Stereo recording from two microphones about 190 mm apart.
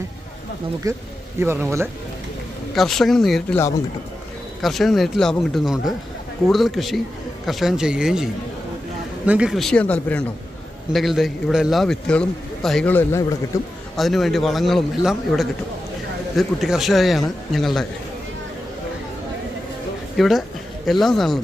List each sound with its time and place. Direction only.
0.9 s speech: 15° right (ahead or behind)
2.7 s a man's voice: centre (ahead or behind)
4.6 s a man's voice: centre (ahead or behind)
13.9 s a man's voice: centre (ahead or behind)
20.1 s a man's voice: centre (ahead or behind)